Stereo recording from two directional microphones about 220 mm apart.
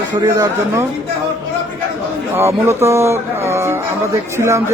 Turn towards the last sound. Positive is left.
turn(degrees=-10)  # may be behind; listen again after turning